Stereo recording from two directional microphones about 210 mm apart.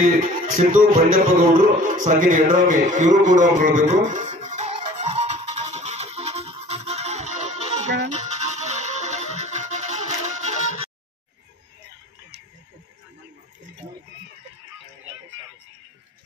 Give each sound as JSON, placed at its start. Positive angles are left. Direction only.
{"t": 0.0, "sound": "music", "side_deg": -40}